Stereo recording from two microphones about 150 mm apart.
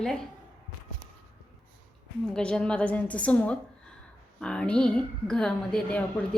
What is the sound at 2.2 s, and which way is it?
A woman's voice, 5° left (ahead or behind).